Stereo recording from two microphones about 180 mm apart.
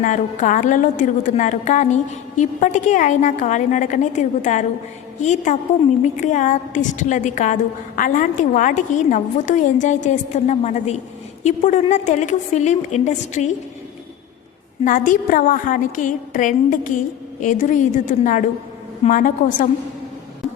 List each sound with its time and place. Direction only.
0.0 s a woman's voice: 45° left (ahead or behind)
14.8 s a woman's voice: 45° left (ahead or behind)